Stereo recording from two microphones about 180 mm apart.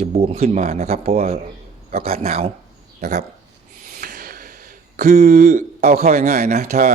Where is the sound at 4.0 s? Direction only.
50° right (ahead or behind).